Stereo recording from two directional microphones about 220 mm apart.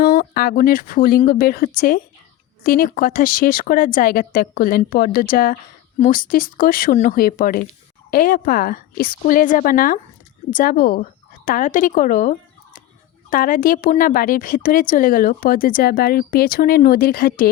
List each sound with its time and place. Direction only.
0.0 s speech: 45° left (ahead or behind)